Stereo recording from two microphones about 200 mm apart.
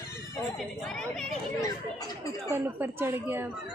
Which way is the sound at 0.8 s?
Centre (ahead or behind).